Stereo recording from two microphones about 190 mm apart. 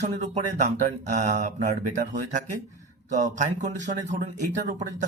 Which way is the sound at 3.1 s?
40° right (ahead or behind).